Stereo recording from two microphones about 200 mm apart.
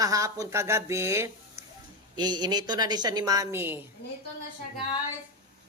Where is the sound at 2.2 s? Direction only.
20° right (ahead or behind).